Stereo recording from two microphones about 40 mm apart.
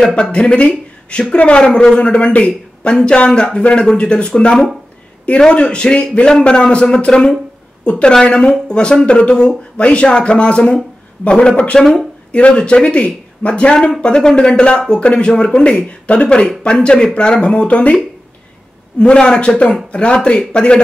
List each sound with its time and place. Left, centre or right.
0.1 s speech: left
1.6 s a man's voice: centre
2.0 s speech: left
5.5 s speech: left
18.9 s speech: left